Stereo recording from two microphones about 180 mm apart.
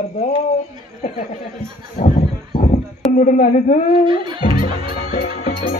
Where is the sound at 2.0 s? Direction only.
45° left (ahead or behind).